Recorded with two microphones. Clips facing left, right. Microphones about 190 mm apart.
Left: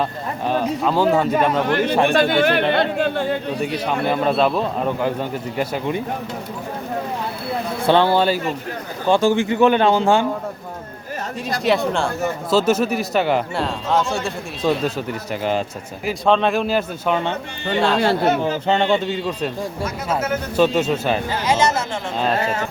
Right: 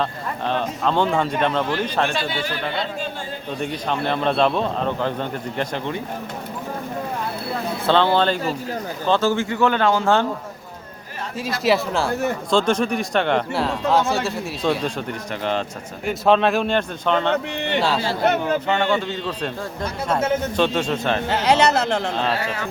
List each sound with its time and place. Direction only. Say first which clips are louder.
0.0 s a man's voice: left 2 dB; 10° left (ahead or behind)
1.6 s speech: left 5 dB; 60° left (ahead or behind)
3.8 s a man's voice: left 2 dB; 5° left (ahead or behind)
7.9 s a man's voice: left 2 dB; 10° left (ahead or behind)
11.4 s a man's voice: left 1 dB; centre (ahead or behind)
16.0 s a man's voice: even; centre (ahead or behind)
17.7 s a man's voice: left 3 dB; 5° right (ahead or behind)
18.4 s a man's voice: left 2 dB; 25° left (ahead or behind); by 21.2 s 5° left (ahead or behind)
21.2 s speech: right 5 dB; 65° right (ahead or behind)